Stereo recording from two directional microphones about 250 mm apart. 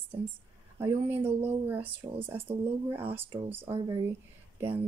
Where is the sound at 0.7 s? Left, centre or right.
Centre.